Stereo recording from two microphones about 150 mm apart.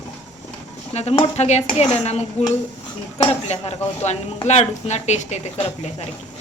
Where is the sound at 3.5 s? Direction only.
45° left (ahead or behind).